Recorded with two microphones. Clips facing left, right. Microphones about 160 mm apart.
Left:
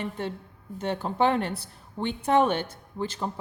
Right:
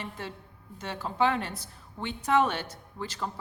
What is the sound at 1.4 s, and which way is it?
Speech, 60° left (ahead or behind).